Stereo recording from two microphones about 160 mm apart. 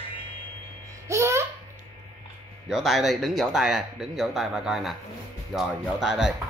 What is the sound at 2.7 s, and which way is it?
Speech, centre (ahead or behind).